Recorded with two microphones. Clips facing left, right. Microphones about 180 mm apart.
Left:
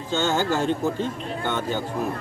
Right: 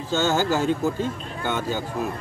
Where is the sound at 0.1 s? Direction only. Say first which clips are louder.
Right 1 dB; 5° right (ahead or behind).